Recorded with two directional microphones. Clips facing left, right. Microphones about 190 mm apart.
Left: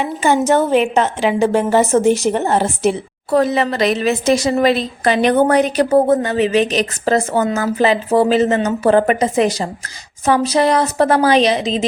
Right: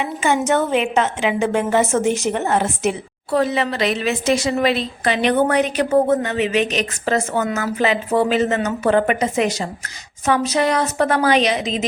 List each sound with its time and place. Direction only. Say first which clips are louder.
0.0 s a woman's voice: left 4 dB; 35° left (ahead or behind)
3.3 s a woman's voice: left 4 dB; 40° left (ahead or behind)